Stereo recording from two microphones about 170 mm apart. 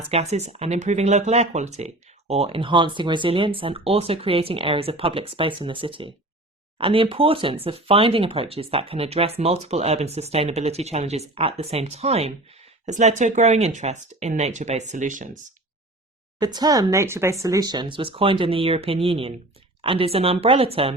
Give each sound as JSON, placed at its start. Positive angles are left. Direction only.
{"t": 0.1, "sound": "speech", "side_deg": -40}
{"t": 16.4, "sound": "speech", "side_deg": -25}